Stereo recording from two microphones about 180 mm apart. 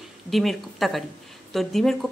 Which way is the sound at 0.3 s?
Centre (ahead or behind).